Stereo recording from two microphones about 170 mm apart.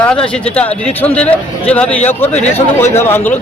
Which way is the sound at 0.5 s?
5° left (ahead or behind).